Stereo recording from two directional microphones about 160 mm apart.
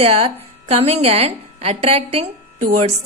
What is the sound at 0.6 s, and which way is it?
A woman's voice, 40° right (ahead or behind).